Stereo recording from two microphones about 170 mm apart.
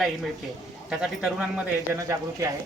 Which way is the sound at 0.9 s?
5° right (ahead or behind).